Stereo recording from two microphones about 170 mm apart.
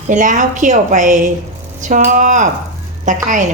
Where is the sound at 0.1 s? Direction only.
45° right (ahead or behind).